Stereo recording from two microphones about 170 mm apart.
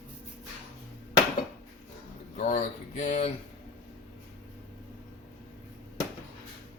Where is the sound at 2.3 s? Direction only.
45° left (ahead or behind).